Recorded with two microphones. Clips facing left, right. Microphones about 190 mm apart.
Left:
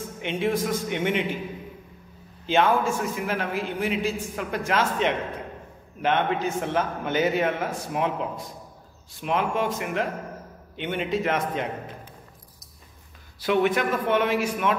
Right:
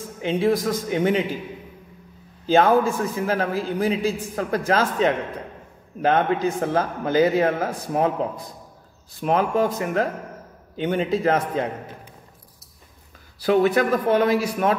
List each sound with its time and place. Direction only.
0.2 s a man's voice: 35° right (ahead or behind)
2.4 s a man's voice: 40° right (ahead or behind)
13.4 s a man's voice: 35° right (ahead or behind)